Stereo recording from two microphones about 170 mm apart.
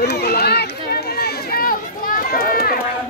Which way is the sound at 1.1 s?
65° left (ahead or behind).